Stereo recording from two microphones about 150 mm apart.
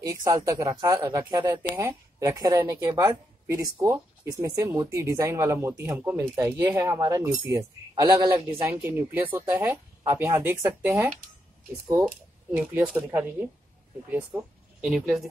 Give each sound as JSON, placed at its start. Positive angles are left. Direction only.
{"t": 0.0, "sound": "speech", "side_deg": -20}